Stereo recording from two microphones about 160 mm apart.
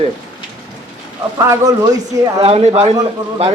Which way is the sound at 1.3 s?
20° right (ahead or behind).